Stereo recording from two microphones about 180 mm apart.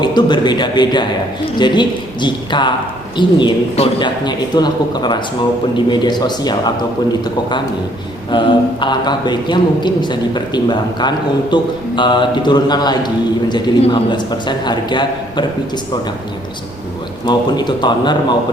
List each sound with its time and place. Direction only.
0.0 s a man's voice: 25° left (ahead or behind)
17.2 s a man's voice: 25° left (ahead or behind)